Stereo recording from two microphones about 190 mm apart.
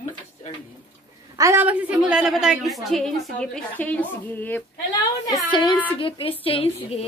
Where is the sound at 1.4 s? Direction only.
10° right (ahead or behind); by 4.6 s 10° left (ahead or behind).